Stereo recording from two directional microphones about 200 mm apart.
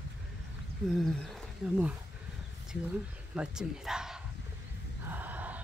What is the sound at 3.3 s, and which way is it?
Speech, 5° right (ahead or behind).